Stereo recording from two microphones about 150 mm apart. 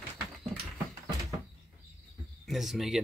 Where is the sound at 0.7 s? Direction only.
20° right (ahead or behind).